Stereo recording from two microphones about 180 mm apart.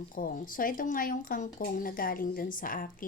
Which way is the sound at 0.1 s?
50° left (ahead or behind).